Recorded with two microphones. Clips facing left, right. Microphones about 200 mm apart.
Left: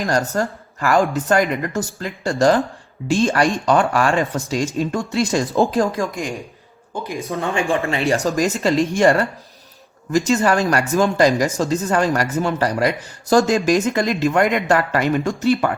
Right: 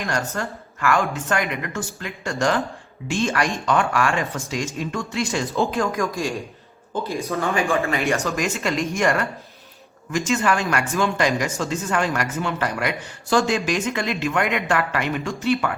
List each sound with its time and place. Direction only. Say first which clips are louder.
0.0 s speech: left 6 dB; 40° left (ahead or behind)
6.9 s speech: right 1 dB; 15° left (ahead or behind)
7.4 s speech: left 2 dB; 30° left (ahead or behind)